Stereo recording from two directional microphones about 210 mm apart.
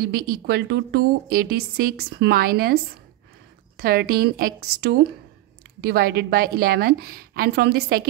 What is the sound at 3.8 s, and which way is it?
A woman's voice, 45° right (ahead or behind).